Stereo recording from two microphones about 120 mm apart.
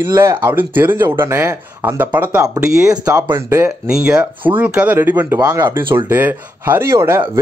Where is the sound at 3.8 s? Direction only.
5° right (ahead or behind).